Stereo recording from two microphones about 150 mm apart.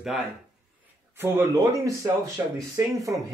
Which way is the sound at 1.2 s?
15° right (ahead or behind).